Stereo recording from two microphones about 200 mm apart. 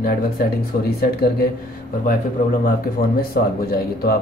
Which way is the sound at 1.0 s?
50° left (ahead or behind).